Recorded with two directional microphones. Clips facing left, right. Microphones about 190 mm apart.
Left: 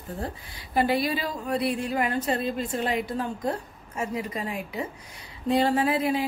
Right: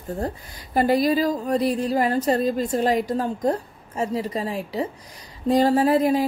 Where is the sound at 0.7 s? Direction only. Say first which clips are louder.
Right 5 dB; 40° right (ahead or behind).